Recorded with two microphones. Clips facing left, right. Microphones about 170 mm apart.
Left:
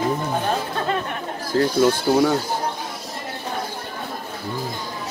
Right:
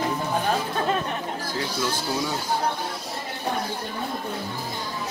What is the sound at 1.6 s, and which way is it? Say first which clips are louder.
Speech: left 12 dB; 55° left (ahead or behind).